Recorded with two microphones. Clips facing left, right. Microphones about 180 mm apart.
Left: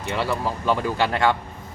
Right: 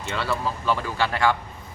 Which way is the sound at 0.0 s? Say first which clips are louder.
Left 2 dB; 15° left (ahead or behind).